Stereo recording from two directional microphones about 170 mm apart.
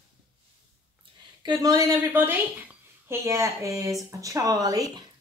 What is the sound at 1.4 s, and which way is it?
A woman's voice, 20° right (ahead or behind).